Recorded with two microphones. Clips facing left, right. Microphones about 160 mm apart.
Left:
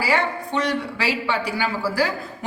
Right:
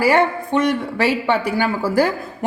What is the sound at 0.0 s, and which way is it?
A woman's voice, 50° right (ahead or behind).